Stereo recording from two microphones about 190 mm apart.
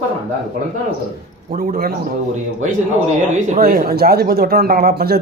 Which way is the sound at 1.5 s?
50° right (ahead or behind).